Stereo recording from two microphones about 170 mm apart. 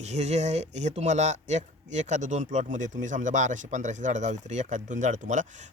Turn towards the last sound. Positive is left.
turn(degrees=-45)  # may be behind; listen again after turning